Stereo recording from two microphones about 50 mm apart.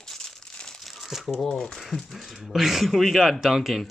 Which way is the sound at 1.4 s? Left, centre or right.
Centre.